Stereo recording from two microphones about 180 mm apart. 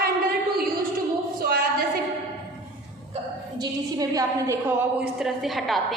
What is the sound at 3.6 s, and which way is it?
A woman's voice, 20° right (ahead or behind).